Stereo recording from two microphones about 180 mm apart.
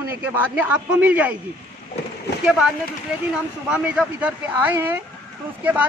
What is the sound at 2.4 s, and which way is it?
Speech, 5° right (ahead or behind).